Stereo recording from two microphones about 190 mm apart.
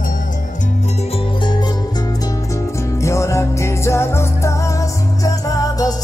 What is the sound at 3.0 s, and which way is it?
Music, 15° left (ahead or behind).